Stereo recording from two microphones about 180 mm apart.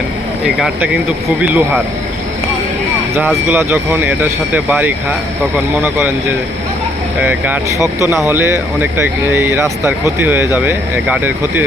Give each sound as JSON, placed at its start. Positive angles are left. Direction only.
{"t": 1.4, "sound": "speech", "side_deg": -10}
{"t": 3.2, "sound": "speech", "side_deg": -10}
{"t": 7.3, "sound": "speech", "side_deg": -10}
{"t": 7.9, "sound": "speech", "side_deg": 20}
{"t": 8.3, "sound": "speech", "side_deg": -10}